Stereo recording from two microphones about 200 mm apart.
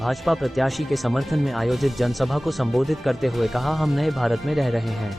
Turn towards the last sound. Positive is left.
turn(degrees=0)  # may be behind; listen again after turning